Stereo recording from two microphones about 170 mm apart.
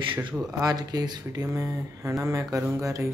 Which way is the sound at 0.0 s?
30° right (ahead or behind).